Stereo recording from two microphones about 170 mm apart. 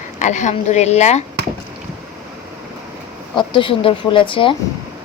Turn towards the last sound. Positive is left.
turn(degrees=30)  # may be behind; listen again after turning